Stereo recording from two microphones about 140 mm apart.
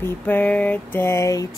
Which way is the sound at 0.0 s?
10° left (ahead or behind).